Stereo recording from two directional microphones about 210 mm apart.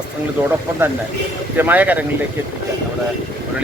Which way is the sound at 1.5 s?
10° right (ahead or behind).